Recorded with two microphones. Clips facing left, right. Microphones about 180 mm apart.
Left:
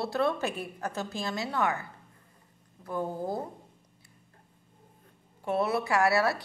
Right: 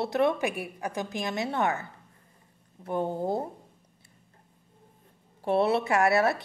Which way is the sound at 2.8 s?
25° right (ahead or behind).